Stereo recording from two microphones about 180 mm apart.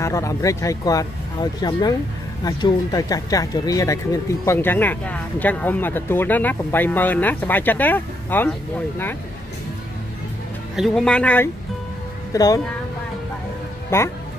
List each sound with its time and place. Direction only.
0.0 s speech: 15° left (ahead or behind)
10.8 s speech: 5° left (ahead or behind)
12.3 s speech: 20° left (ahead or behind)
13.8 s speech: 15° left (ahead or behind)